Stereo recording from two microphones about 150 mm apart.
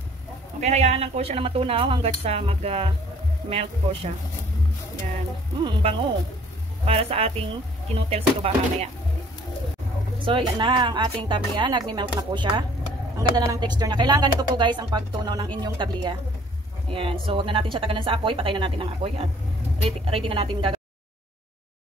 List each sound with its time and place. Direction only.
0.6 s speech: 45° right (ahead or behind)
5.6 s speech: 35° right (ahead or behind)
10.2 s speech: 35° right (ahead or behind)